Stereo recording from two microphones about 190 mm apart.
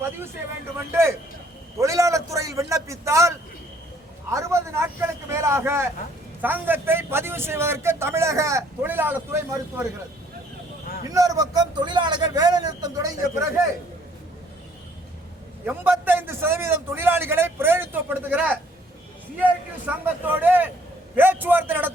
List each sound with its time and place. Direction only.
1.8 s a man's voice: 15° right (ahead or behind)
11.1 s a man's voice: 20° right (ahead or behind)
15.6 s a man's voice: 10° right (ahead or behind)